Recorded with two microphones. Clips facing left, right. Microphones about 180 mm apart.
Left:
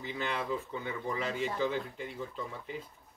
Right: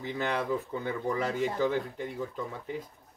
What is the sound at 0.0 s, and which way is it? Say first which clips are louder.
Speech: right 4 dB; 50° right (ahead or behind).